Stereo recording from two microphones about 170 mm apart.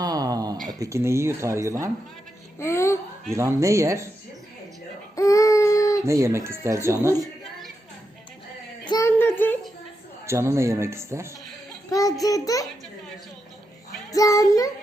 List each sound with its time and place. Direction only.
0.0 s a sound: 20° right (ahead or behind)
0.7 s speech: 20° right (ahead or behind)
2.6 s speech: 15° left (ahead or behind)
3.3 s speech: 15° right (ahead or behind)
5.1 s baby cry: 20° left (ahead or behind)
6.1 s speech: 15° right (ahead or behind)
8.8 s a sound: 25° left (ahead or behind)
9.0 s a sound: 15° left (ahead or behind)
10.2 s speech: 15° right (ahead or behind)
11.9 s a sound: 20° left (ahead or behind)
12.2 s child singing: 20° left (ahead or behind)
14.1 s child singing: 20° left (ahead or behind)